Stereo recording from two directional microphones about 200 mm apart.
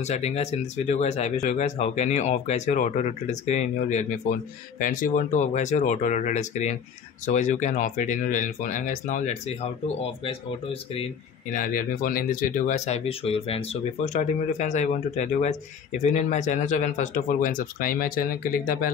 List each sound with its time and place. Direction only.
0.0 s speech: 35° left (ahead or behind)
11.5 s speech: 45° left (ahead or behind)